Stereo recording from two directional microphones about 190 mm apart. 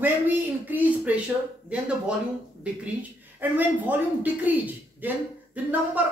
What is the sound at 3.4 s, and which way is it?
A woman's voice, 10° right (ahead or behind).